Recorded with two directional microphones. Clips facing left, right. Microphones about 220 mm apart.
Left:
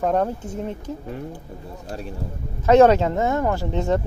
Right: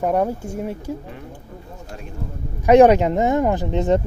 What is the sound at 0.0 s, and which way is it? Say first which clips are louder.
Speech: right 1 dB; 10° right (ahead or behind).